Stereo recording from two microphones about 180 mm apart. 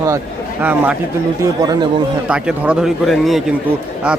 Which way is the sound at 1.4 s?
20° right (ahead or behind).